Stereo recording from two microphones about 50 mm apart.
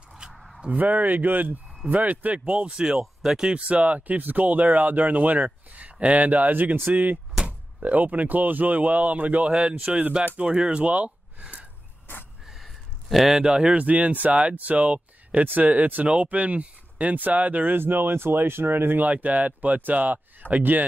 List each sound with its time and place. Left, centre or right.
0.3 s a sound: centre
0.7 s speech: right
2.5 s speech: centre
3.3 s speech: centre
4.2 s speech: right
9.5 s speech: centre
9.8 s speech: right
10.4 s speech: centre
12.4 s a sound: centre
13.7 s speech: right
19.2 s speech: right